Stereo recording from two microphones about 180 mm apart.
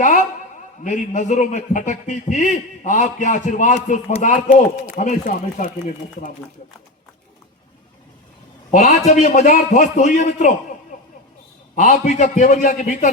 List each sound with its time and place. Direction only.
0.9 s a man's voice: 45° left (ahead or behind)
8.7 s a man's voice: 45° left (ahead or behind)
11.8 s a man's voice: 45° left (ahead or behind)